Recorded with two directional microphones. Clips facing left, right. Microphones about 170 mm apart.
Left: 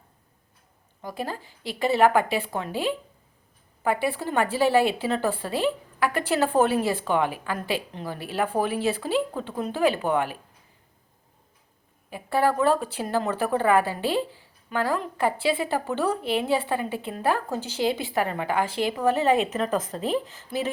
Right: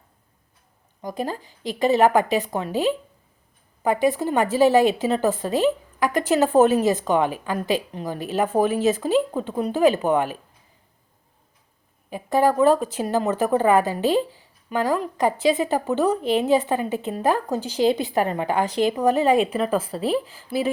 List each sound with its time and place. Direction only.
1.0 s speech: 15° right (ahead or behind)
4.2 s a woman's voice: 15° right (ahead or behind)
8.7 s speech: 40° right (ahead or behind)
9.3 s speech: 15° right (ahead or behind)
12.1 s a woman's voice: 15° right (ahead or behind)